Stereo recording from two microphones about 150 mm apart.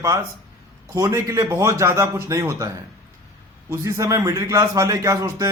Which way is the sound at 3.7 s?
20° right (ahead or behind).